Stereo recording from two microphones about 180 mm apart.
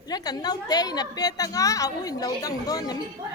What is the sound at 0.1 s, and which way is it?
A woman's voice, 20° left (ahead or behind).